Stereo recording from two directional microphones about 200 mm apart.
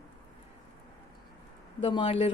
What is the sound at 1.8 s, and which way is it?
Speech, 25° left (ahead or behind).